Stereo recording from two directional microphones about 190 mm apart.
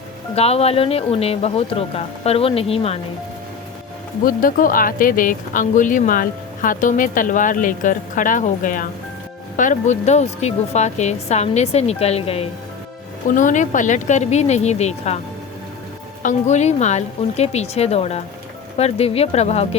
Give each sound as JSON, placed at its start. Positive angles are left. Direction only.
{"t": 0.3, "sound": "a woman's voice", "side_deg": 30}
{"t": 4.2, "sound": "a woman's voice", "side_deg": 50}
{"t": 13.2, "sound": "a woman's voice", "side_deg": 45}
{"t": 16.2, "sound": "a woman's voice", "side_deg": 35}